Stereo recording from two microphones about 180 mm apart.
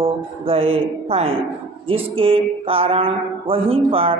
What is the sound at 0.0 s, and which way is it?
Music, 30° right (ahead or behind).